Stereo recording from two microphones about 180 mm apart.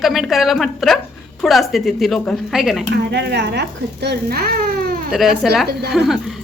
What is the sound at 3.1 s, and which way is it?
Speech, 70° right (ahead or behind).